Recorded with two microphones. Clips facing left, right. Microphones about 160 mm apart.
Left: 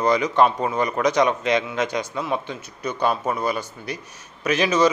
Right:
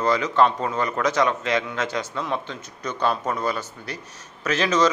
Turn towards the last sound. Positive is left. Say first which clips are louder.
# left 2 dB
turn(degrees=10)  # may be behind; listen again after turning